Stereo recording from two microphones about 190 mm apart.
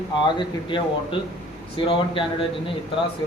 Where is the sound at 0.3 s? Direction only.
25° left (ahead or behind).